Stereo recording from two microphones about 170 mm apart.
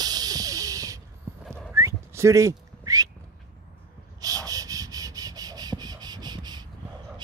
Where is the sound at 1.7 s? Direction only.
15° right (ahead or behind).